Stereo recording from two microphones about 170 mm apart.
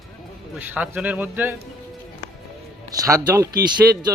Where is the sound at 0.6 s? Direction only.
10° right (ahead or behind).